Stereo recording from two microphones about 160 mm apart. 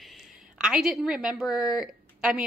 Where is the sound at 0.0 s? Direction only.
Centre (ahead or behind).